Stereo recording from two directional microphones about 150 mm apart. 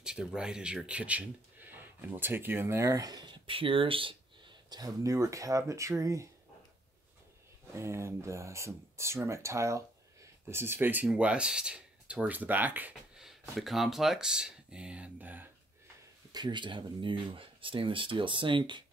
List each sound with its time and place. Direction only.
0.0 s speech: 5° right (ahead or behind); by 6.2 s 20° right (ahead or behind)
7.7 s speech: 20° right (ahead or behind)
16.3 s speech: 30° right (ahead or behind)